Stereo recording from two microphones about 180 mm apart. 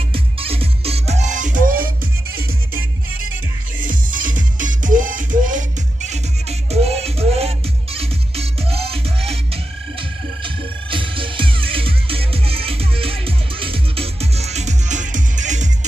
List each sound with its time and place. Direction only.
0.1 s music: 30° right (ahead or behind); by 1.9 s 45° right (ahead or behind)
3.8 s music: 50° right (ahead or behind)
6.7 s music: 35° right (ahead or behind)
10.4 s music: 30° right (ahead or behind)